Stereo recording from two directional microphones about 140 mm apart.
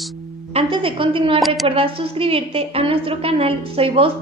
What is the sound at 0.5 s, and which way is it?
Speech, 40° right (ahead or behind).